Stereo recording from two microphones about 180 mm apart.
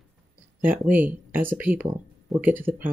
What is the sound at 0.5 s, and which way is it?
Speech, 10° right (ahead or behind).